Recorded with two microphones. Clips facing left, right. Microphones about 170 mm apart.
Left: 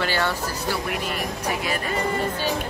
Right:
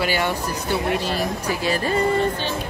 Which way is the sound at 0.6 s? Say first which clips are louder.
Right 5 dB; 30° right (ahead or behind).